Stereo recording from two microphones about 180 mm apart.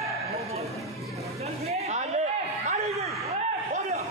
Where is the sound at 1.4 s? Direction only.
35° right (ahead or behind).